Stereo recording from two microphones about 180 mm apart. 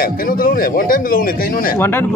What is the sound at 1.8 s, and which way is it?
Speech, 10° left (ahead or behind).